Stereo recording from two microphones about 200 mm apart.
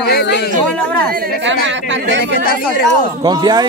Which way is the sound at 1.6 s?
65° right (ahead or behind).